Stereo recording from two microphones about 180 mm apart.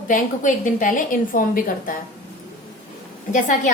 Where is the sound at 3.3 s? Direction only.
45° left (ahead or behind).